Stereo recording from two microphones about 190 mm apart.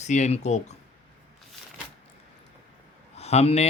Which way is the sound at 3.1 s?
35° left (ahead or behind).